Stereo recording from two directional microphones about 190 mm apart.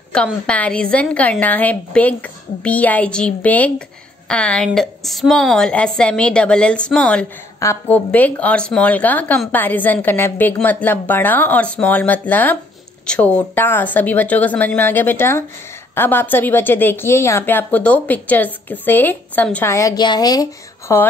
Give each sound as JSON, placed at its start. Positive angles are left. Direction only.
{"t": 0.1, "sound": "a woman's voice", "side_deg": 5}